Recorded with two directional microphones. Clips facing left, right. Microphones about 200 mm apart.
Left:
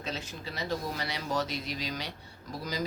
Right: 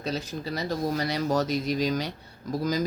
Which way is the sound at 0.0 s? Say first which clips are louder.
Right 7 dB; 35° right (ahead or behind).